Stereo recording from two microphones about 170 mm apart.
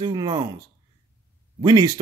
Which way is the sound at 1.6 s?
25° right (ahead or behind).